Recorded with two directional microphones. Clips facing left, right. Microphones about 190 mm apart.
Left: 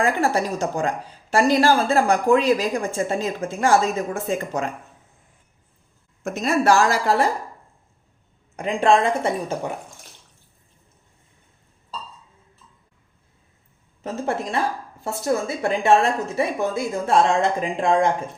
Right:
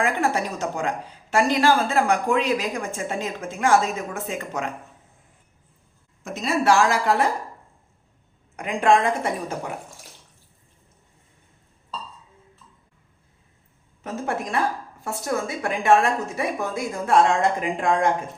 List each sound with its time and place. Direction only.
0.0 s a woman's voice: 35° left (ahead or behind)
6.2 s a woman's voice: 50° left (ahead or behind)
8.5 s a woman's voice: 30° left (ahead or behind)
14.0 s a woman's voice: 25° left (ahead or behind)